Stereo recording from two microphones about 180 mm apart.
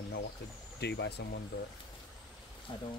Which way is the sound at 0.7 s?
70° left (ahead or behind).